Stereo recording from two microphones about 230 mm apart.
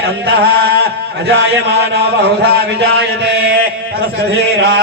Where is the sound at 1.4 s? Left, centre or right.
Right.